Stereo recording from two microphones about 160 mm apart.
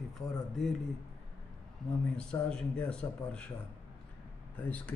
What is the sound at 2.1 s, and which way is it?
A man's voice, 5° left (ahead or behind).